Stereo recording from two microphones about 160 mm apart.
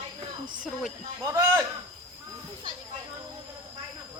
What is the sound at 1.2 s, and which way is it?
Speech, 20° right (ahead or behind).